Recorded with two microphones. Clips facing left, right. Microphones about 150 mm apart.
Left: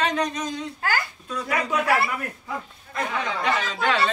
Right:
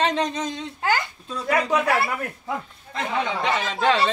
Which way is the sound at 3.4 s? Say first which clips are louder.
Right 2 dB; 25° right (ahead or behind).